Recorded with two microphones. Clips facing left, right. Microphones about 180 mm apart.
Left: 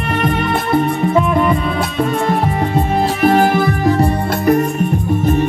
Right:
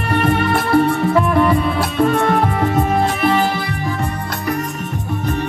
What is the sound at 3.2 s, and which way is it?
Music, 50° left (ahead or behind).